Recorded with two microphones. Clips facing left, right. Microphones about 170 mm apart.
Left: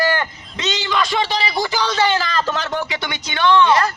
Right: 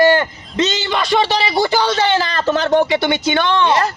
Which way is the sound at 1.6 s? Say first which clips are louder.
Right 7 dB; 30° right (ahead or behind).